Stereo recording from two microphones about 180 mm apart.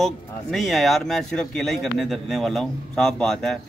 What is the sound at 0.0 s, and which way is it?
Speech, centre (ahead or behind).